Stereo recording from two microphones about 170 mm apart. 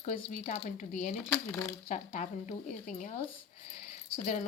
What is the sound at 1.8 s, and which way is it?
Speech, 45° left (ahead or behind).